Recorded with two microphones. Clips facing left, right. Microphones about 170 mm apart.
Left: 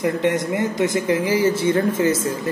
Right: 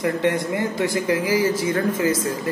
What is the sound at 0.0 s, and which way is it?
Speech, 20° left (ahead or behind).